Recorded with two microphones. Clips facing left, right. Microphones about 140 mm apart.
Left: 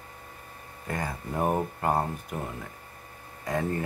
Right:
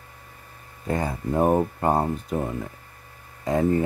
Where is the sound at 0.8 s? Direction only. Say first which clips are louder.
Right 7 dB; 25° right (ahead or behind).